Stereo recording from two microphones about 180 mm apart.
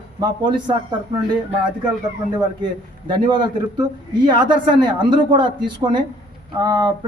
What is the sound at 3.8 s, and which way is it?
Speech, 25° right (ahead or behind).